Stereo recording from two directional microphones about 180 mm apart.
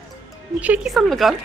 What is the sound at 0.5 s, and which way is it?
Speech, 10° right (ahead or behind).